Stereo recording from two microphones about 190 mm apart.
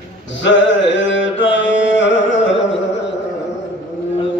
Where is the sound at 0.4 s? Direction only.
70° left (ahead or behind).